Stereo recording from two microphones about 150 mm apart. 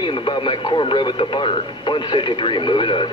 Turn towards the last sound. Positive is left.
turn(degrees=35)  # may be behind; listen again after turning